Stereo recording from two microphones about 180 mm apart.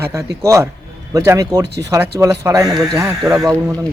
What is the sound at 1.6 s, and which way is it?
Speech, 75° right (ahead or behind).